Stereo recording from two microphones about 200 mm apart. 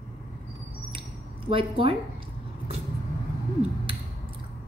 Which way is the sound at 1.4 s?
25° right (ahead or behind).